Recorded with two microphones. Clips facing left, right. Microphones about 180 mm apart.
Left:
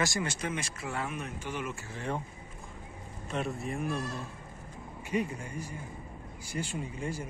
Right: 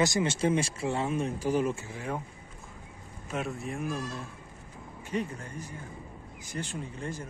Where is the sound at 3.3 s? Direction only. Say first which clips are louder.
Even; centre (ahead or behind).